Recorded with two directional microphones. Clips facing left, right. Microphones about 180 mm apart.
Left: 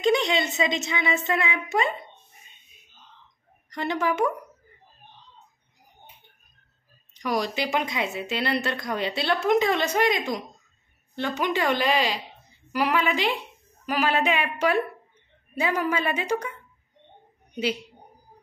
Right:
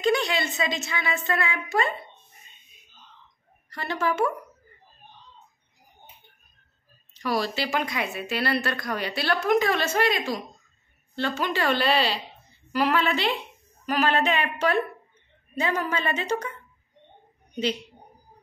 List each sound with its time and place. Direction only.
0.0 s speech: 20° left (ahead or behind)
3.7 s a woman's voice: 15° left (ahead or behind)
7.2 s a woman's voice: 15° left (ahead or behind)